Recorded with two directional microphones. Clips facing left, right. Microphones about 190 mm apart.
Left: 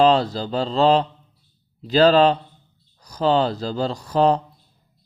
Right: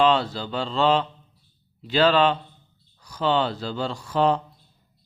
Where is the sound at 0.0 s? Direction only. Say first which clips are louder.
Left 4 dB; 40° left (ahead or behind).